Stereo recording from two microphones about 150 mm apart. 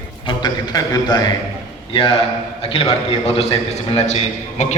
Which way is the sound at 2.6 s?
40° left (ahead or behind).